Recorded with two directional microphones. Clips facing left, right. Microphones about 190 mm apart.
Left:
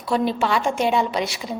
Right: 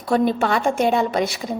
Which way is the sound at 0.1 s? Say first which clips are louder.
Right 2 dB; 50° right (ahead or behind).